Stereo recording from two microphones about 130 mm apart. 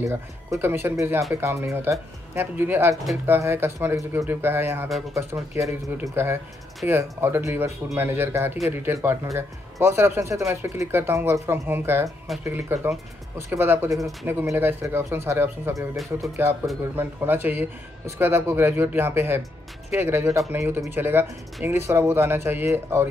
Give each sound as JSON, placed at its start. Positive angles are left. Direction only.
{"t": 0.0, "sound": "speech", "side_deg": -20}